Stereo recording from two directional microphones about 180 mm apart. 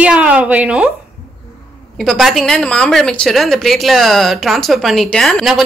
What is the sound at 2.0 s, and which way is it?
A woman's voice, centre (ahead or behind).